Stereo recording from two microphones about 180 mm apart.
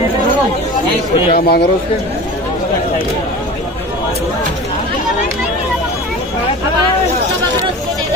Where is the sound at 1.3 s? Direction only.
60° left (ahead or behind).